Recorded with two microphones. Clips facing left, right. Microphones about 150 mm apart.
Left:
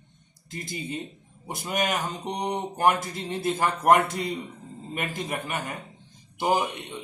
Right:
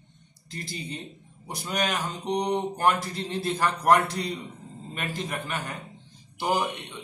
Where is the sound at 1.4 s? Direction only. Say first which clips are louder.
Left 1 dB; 20° left (ahead or behind).